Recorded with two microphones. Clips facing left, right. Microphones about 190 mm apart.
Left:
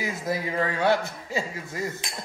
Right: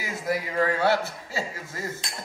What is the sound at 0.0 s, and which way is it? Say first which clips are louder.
Speech: even; 20° left (ahead or behind).